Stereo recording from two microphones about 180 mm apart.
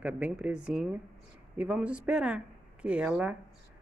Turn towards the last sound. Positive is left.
turn(degrees=-5)  # may be behind; listen again after turning